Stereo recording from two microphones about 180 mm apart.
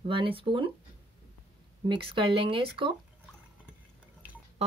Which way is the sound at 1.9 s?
25° right (ahead or behind).